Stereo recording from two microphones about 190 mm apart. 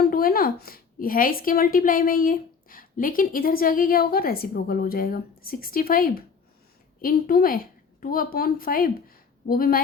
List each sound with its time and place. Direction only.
0.0 s a woman's voice: 50° left (ahead or behind)